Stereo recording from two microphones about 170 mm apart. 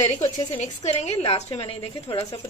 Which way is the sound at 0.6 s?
40° left (ahead or behind).